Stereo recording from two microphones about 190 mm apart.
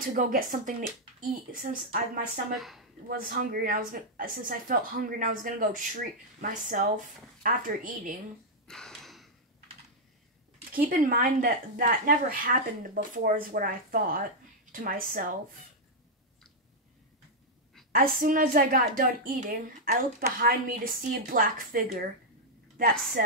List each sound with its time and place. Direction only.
0.0 s a woman's voice: 45° right (ahead or behind)
2.5 s speech: centre (ahead or behind)
3.1 s a woman's voice: 50° right (ahead or behind)
8.6 s a sound: 5° left (ahead or behind)
10.7 s a woman's voice: 50° right (ahead or behind)
17.9 s a woman's voice: 45° right (ahead or behind)
23.2 s a woman's voice: 50° right (ahead or behind)